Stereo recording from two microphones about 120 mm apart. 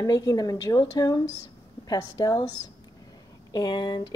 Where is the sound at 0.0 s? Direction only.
30° left (ahead or behind).